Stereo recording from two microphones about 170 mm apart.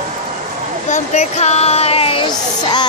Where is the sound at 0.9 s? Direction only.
45° left (ahead or behind).